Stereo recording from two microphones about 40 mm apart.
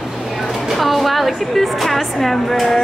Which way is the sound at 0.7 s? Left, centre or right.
Centre.